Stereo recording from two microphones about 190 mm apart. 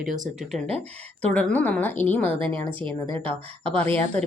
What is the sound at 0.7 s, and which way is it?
Speech, 35° right (ahead or behind).